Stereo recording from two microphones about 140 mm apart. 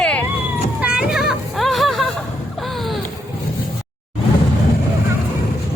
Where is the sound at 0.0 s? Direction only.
10° left (ahead or behind).